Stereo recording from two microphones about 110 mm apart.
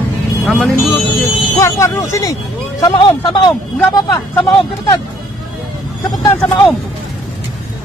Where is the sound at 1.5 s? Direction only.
30° left (ahead or behind).